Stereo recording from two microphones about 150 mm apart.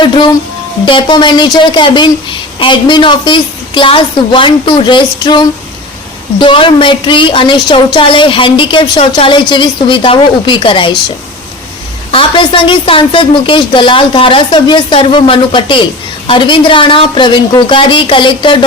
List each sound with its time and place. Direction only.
0.0 s speech: 30° left (ahead or behind)
12.1 s speech: 35° left (ahead or behind)